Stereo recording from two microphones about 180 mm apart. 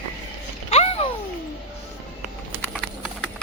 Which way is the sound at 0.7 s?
35° left (ahead or behind).